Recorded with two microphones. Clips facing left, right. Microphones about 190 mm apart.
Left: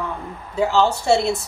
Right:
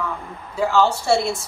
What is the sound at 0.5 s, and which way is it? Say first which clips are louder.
Speech: even; 20° left (ahead or behind).